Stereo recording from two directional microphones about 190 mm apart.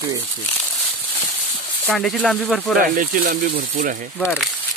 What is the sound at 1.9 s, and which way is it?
Speech, 5° left (ahead or behind).